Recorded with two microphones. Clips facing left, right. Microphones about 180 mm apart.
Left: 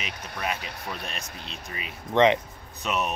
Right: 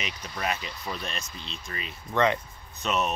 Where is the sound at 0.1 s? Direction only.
60° left (ahead or behind).